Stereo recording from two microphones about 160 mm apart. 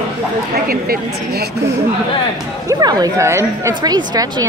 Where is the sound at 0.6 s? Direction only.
70° right (ahead or behind).